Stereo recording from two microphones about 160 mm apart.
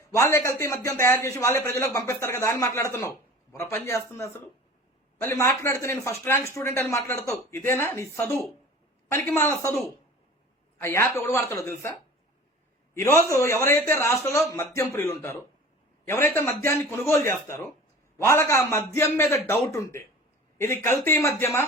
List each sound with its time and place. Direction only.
0.2 s a man's voice: 15° left (ahead or behind)